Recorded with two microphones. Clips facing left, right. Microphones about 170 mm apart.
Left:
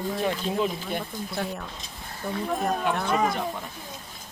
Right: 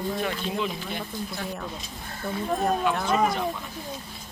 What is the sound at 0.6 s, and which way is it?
Speech, 50° left (ahead or behind).